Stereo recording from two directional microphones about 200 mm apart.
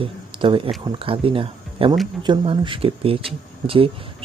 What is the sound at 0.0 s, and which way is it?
Speech, 25° right (ahead or behind).